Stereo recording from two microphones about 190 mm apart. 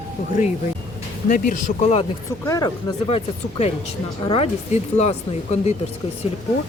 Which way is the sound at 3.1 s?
30° left (ahead or behind).